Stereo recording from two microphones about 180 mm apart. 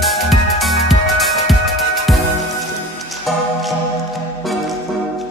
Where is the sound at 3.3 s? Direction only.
Centre (ahead or behind).